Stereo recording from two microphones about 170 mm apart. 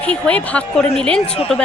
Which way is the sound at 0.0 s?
5° left (ahead or behind).